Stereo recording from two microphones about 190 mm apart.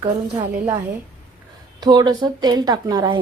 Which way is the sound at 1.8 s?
20° right (ahead or behind).